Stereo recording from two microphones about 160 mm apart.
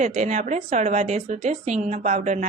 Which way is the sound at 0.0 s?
50° right (ahead or behind).